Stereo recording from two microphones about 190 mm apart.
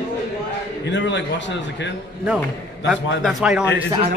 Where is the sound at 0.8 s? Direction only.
70° left (ahead or behind).